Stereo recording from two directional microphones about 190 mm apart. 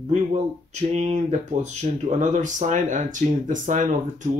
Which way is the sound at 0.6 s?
35° right (ahead or behind).